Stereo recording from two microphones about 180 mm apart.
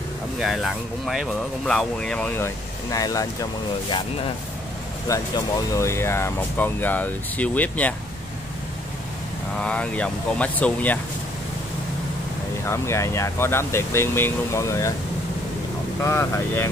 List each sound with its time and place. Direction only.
0.4 s speech: centre (ahead or behind); by 3.3 s 20° left (ahead or behind)
5.0 s speech: 20° left (ahead or behind)
9.6 s speech: 5° left (ahead or behind)
12.6 s speech: 15° left (ahead or behind)
16.0 s speech: 15° left (ahead or behind)